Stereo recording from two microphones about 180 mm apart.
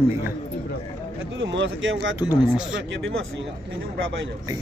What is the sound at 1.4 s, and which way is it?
Speech, 90° right.